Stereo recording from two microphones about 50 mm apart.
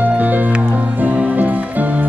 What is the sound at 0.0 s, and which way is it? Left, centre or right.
Music, right.